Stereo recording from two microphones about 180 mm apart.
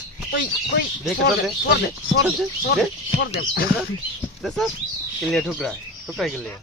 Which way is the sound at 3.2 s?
60° left (ahead or behind).